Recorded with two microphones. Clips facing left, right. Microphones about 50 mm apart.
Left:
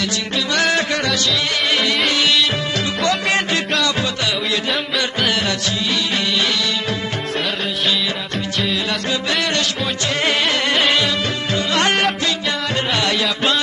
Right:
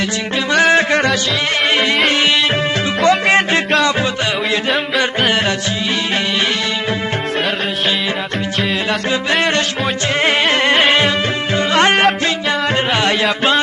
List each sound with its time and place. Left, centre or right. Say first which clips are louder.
0.5 s music: right 6 dB; centre
0.7 s music: right 5 dB; right
4.6 s music: right 4 dB; centre
9.1 s music: right 5 dB; right